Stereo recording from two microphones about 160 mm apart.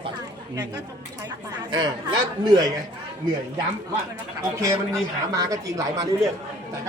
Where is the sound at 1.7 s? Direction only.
25° right (ahead or behind).